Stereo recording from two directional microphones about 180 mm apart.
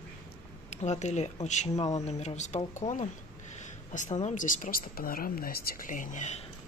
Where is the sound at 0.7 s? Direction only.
40° left (ahead or behind).